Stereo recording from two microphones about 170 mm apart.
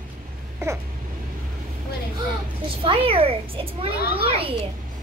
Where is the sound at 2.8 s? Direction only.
35° right (ahead or behind).